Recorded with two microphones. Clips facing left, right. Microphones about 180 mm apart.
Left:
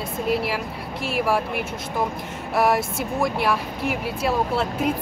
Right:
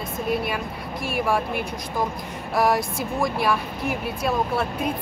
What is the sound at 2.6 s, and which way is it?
Speech, 5° left (ahead or behind).